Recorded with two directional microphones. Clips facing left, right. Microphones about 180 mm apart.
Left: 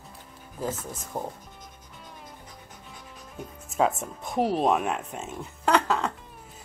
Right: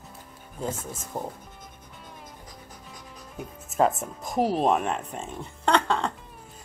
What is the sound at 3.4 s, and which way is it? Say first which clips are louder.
Speech: right 2 dB; centre (ahead or behind).